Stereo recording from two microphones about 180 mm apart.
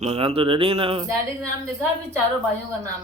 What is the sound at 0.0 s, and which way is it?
A man's voice, 35° right (ahead or behind).